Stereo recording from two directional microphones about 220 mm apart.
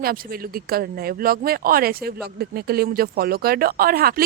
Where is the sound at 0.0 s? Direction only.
40° right (ahead or behind).